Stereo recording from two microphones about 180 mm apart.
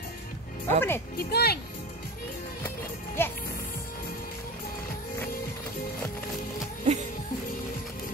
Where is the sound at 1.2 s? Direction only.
60° left (ahead or behind).